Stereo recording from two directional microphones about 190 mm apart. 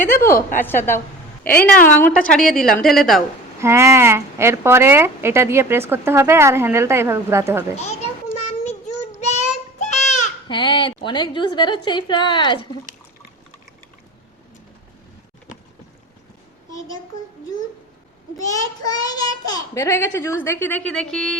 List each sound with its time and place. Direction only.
0.6 s a child's voice: 10° left (ahead or behind)
3.6 s speech: 15° right (ahead or behind)
8.4 s child singing: 35° left (ahead or behind)
10.5 s a woman's voice: 25° left (ahead or behind)
18.3 s a child's voice: 20° left (ahead or behind); by 21.3 s 5° left (ahead or behind)